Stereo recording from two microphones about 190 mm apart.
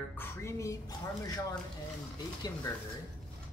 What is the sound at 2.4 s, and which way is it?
Speech, 20° left (ahead or behind).